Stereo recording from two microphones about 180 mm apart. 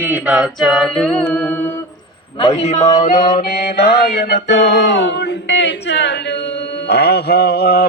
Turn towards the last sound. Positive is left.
turn(degrees=60)  # may be behind; listen again after turning